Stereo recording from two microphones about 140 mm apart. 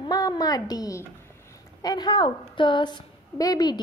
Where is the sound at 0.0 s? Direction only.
30° left (ahead or behind).